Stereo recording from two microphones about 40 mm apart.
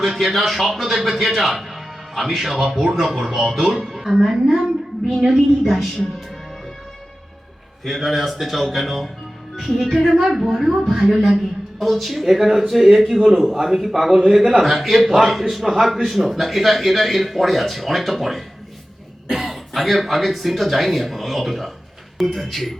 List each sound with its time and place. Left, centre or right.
0.0 s a man's voice: centre
7.9 s a man's voice: centre
10.2 s a woman's voice: centre